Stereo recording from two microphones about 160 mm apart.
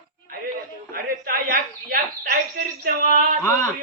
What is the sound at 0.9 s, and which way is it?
Speech, 65° right (ahead or behind).